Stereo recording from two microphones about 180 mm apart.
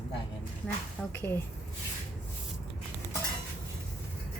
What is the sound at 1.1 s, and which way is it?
Speech, 15° left (ahead or behind).